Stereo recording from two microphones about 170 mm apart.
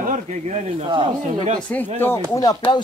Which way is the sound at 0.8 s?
30° right (ahead or behind).